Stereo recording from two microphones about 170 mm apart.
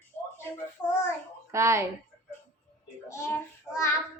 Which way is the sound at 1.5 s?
15° right (ahead or behind).